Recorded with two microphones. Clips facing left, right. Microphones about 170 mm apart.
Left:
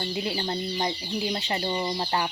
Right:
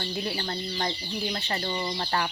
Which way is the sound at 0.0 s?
20° left (ahead or behind).